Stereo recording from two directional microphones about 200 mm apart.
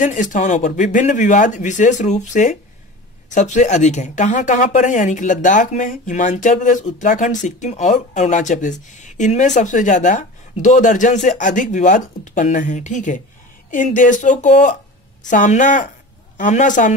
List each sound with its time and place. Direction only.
0.0 s speech: 40° left (ahead or behind)